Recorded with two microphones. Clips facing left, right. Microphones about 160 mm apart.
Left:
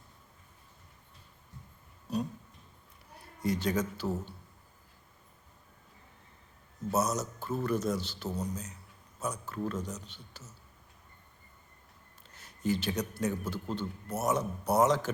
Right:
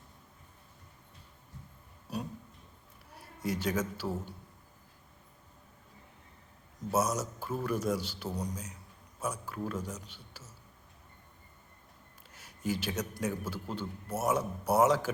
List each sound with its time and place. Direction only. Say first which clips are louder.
2.1 s a sound: left 5 dB; 10° right (ahead or behind)
3.2 s a man's voice: left 3 dB; 5° right (ahead or behind)
6.9 s a man's voice: even; 10° right (ahead or behind)
12.3 s a man's voice: left 3 dB; 10° right (ahead or behind)